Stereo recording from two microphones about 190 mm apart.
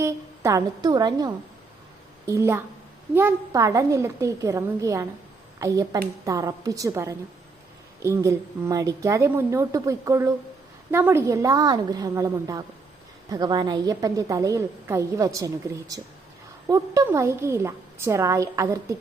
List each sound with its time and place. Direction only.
0.0 s a woman's voice: 15° right (ahead or behind)